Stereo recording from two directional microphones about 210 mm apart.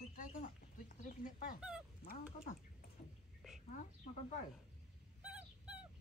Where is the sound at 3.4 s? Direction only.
Centre (ahead or behind).